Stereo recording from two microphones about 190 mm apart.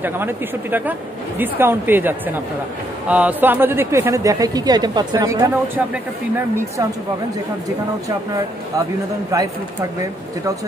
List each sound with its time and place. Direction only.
0.0 s a man's voice: 10° right (ahead or behind)
9.3 s a man's voice: 15° right (ahead or behind)